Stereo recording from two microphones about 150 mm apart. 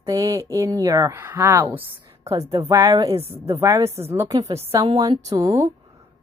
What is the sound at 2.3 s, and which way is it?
Speech, 40° right (ahead or behind).